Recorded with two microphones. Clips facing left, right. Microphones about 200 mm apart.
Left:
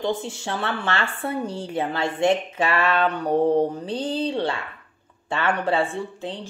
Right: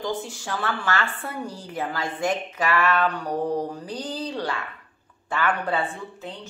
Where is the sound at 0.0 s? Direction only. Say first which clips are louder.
Left 3 dB; 25° left (ahead or behind).